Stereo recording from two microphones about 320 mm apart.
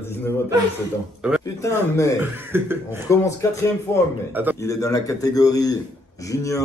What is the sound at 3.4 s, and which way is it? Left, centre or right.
Speech, centre.